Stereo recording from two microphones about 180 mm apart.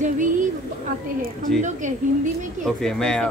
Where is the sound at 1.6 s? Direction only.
45° right (ahead or behind).